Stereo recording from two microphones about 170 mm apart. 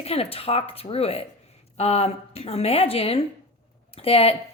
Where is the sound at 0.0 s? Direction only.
35° left (ahead or behind).